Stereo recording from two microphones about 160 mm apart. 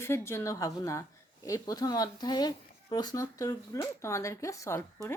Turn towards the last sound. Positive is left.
turn(degrees=15)  # may be behind; listen again after turning